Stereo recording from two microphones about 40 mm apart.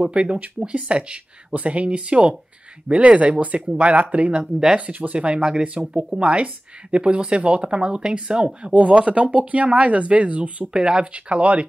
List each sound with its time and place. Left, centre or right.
0.0 s speech: right
5.4 s speech: right